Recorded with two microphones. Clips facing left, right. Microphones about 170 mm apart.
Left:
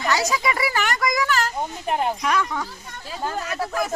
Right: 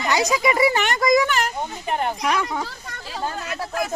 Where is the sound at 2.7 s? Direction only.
90° right.